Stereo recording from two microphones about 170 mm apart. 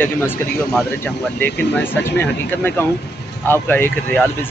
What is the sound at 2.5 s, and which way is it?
A man's voice, 10° left (ahead or behind).